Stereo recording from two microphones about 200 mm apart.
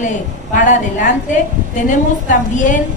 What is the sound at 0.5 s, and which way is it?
Speech, 40° left (ahead or behind).